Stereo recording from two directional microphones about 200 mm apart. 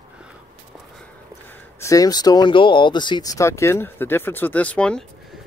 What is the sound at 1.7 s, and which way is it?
Speech, 15° left (ahead or behind).